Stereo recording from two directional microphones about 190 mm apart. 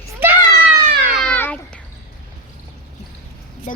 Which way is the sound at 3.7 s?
40° left (ahead or behind).